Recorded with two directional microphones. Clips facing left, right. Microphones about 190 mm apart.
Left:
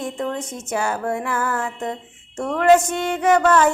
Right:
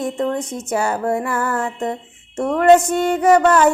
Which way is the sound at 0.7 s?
Centre (ahead or behind).